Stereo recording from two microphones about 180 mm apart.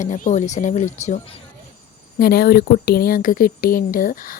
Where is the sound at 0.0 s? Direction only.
45° left (ahead or behind).